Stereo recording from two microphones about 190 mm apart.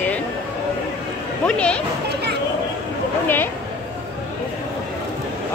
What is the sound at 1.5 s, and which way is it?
Speech, 5° left (ahead or behind).